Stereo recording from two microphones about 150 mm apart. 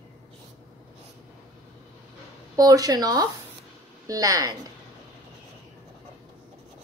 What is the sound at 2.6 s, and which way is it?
Speech, 25° right (ahead or behind).